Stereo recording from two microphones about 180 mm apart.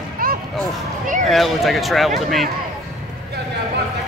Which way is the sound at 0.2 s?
55° right (ahead or behind).